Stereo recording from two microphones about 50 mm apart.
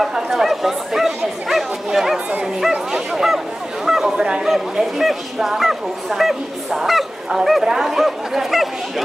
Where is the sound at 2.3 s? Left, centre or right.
Right.